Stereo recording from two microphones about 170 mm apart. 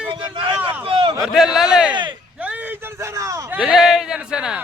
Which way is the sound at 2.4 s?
10° right (ahead or behind).